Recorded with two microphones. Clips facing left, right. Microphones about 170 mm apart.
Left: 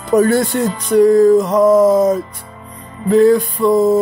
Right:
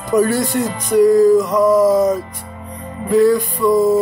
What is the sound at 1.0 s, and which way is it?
Music, 60° left (ahead or behind).